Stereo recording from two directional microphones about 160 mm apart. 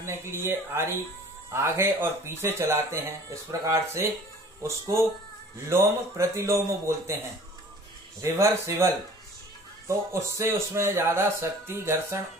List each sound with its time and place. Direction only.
0.0 s speech: 15° right (ahead or behind)
8.2 s speech: 20° right (ahead or behind)